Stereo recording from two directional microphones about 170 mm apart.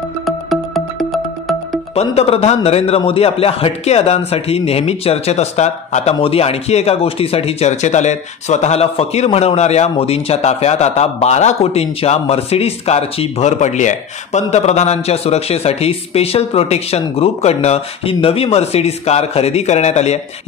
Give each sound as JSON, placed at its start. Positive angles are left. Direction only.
{"t": 0.2, "sound": "music", "side_deg": 0}
{"t": 2.0, "sound": "speech", "side_deg": 35}